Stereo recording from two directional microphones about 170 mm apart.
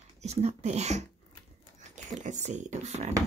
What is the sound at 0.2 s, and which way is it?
Speech, 40° right (ahead or behind).